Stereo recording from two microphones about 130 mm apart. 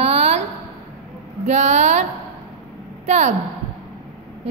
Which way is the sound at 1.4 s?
60° right (ahead or behind).